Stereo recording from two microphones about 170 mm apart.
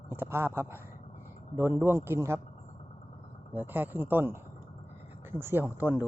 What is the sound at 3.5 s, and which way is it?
Speech, 10° right (ahead or behind).